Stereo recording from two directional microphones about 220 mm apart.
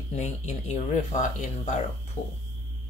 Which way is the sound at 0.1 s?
30° left (ahead or behind).